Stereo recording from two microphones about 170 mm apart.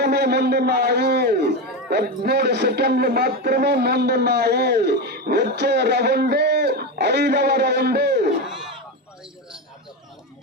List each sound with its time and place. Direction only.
0.0 s a man's voice: 75° right (ahead or behind)